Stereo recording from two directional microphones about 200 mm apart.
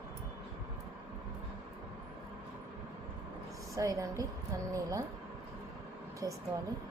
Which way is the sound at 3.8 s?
15° right (ahead or behind).